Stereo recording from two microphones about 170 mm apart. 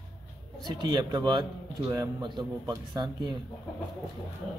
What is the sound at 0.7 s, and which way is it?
A man's voice, 25° right (ahead or behind).